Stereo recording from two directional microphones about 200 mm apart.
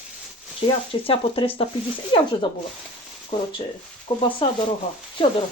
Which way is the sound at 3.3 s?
25° left (ahead or behind).